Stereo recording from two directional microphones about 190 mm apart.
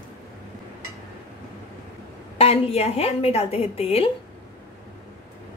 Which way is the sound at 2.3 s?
30° left (ahead or behind).